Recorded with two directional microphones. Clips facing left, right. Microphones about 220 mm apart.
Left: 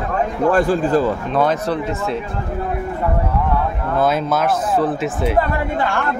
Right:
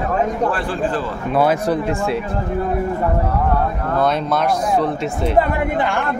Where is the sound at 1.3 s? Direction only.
10° right (ahead or behind).